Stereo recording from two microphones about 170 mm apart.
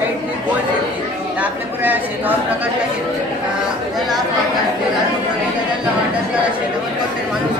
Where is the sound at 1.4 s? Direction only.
10° right (ahead or behind).